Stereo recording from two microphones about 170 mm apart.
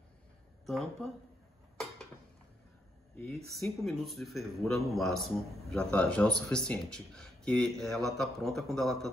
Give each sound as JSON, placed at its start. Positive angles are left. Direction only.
{"t": 0.7, "sound": "speech", "side_deg": 0}
{"t": 3.4, "sound": "speech", "side_deg": 0}